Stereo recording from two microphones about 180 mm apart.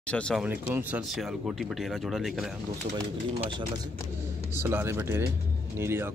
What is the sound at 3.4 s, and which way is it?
Speech, 25° right (ahead or behind).